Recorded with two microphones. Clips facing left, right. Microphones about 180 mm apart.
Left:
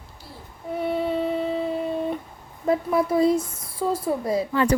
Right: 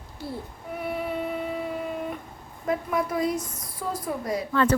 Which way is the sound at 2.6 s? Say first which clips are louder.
Left 5 dB; 30° left (ahead or behind).